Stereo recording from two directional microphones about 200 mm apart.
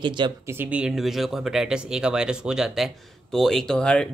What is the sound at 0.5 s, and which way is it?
Speech, 5° right (ahead or behind).